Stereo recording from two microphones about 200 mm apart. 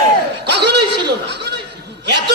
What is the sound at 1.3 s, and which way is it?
Chuckle, 55° right (ahead or behind).